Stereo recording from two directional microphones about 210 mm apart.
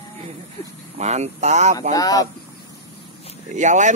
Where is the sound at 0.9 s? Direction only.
30° right (ahead or behind).